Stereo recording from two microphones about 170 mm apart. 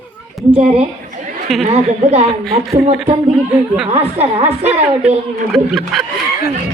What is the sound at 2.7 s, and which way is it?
Speech, 40° right (ahead or behind).